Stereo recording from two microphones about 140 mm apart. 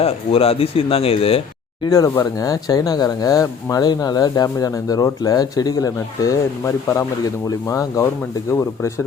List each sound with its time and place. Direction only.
0.0 s speech: 45° left (ahead or behind)
1.8 s speech: 25° left (ahead or behind)
7.4 s speech: 25° left (ahead or behind)